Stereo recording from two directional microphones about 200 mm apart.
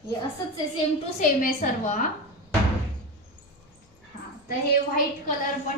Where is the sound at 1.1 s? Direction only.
35° left (ahead or behind).